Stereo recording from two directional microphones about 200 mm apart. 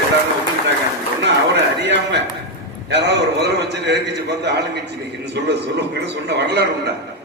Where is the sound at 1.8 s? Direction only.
60° right (ahead or behind).